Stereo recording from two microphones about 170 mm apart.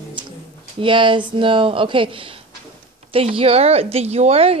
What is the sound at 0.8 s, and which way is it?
A woman's voice, 30° right (ahead or behind).